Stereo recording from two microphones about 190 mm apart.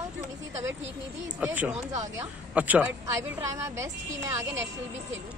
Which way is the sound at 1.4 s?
10° right (ahead or behind).